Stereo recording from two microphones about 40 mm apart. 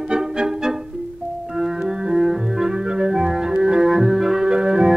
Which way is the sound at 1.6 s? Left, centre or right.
Centre.